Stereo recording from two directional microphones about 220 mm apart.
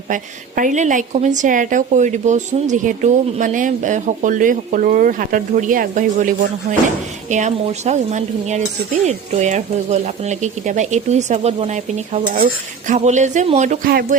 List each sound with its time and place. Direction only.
0.1 s a woman's voice: 35° right (ahead or behind)